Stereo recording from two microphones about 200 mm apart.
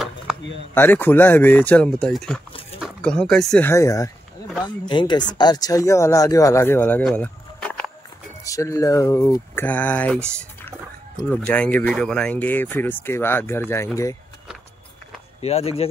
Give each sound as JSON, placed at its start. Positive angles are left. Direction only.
{"t": 0.3, "sound": "a sound", "side_deg": -5}
{"t": 0.7, "sound": "speech", "side_deg": 10}
{"t": 8.5, "sound": "speech", "side_deg": 15}
{"t": 15.4, "sound": "speech", "side_deg": 30}